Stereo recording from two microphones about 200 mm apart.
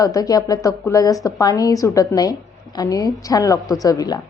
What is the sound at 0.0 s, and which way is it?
A woman's voice, 20° left (ahead or behind).